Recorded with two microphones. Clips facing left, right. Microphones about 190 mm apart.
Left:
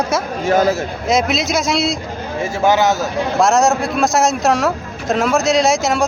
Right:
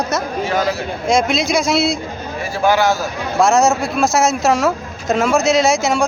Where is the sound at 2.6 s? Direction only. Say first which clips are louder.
Even; 20° left (ahead or behind).